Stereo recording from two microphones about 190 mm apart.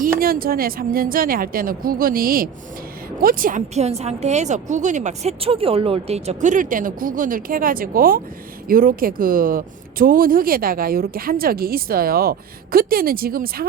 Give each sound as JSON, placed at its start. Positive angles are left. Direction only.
{"t": 0.2, "sound": "a woman's voice", "side_deg": -50}